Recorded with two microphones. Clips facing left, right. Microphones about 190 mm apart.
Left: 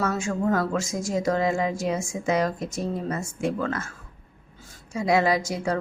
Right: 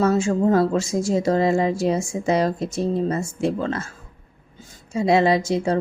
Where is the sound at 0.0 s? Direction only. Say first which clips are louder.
Right 7 dB; 30° right (ahead or behind).